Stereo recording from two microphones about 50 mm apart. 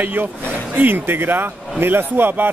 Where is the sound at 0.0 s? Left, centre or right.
Right.